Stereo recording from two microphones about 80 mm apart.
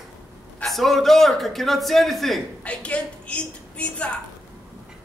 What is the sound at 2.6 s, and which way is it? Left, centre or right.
A woman's voice, centre.